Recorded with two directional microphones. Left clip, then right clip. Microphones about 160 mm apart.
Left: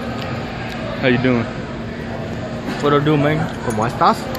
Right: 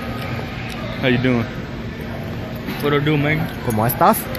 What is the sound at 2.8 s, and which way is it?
Speech, 15° left (ahead or behind).